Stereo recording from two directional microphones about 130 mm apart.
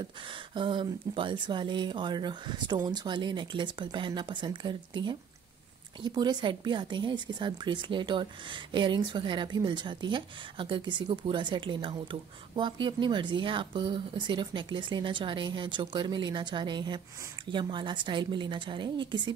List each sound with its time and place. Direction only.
0.6 s a woman's voice: 40° right (ahead or behind)